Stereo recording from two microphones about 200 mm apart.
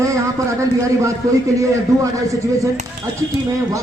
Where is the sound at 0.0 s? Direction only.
15° right (ahead or behind).